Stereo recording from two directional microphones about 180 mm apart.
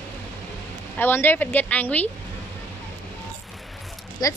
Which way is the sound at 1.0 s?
10° left (ahead or behind).